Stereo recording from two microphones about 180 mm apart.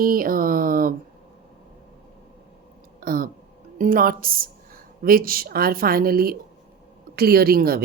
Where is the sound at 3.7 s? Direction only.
50° right (ahead or behind).